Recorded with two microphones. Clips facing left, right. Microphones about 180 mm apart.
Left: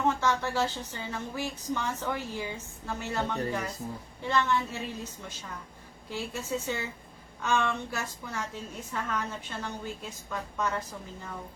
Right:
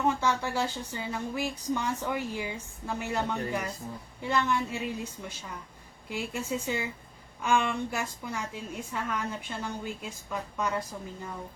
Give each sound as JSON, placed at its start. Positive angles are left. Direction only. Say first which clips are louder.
{"t": 0.1, "sound": "speech", "louder": "even", "side_deg": -15}
{"t": 6.1, "sound": "speech", "louder": "right 1 dB", "side_deg": -15}